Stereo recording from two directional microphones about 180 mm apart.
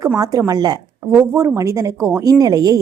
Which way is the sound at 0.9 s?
10° right (ahead or behind).